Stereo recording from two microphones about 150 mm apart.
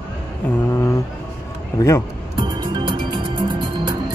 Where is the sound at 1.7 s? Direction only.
25° left (ahead or behind).